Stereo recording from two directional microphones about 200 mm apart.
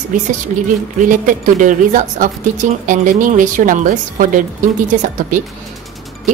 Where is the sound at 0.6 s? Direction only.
40° right (ahead or behind).